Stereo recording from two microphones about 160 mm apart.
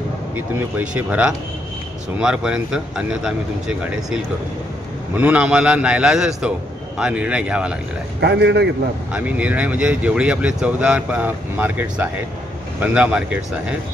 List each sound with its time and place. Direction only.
0.6 s speech: 10° right (ahead or behind)
8.2 s a man's voice: 90° right
9.1 s speech: 10° right (ahead or behind)